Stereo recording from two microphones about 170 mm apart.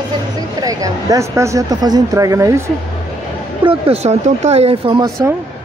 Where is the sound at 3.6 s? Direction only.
35° right (ahead or behind).